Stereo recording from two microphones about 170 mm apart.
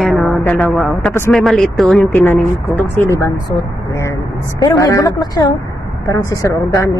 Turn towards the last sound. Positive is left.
turn(degrees=15)  # may be behind; listen again after turning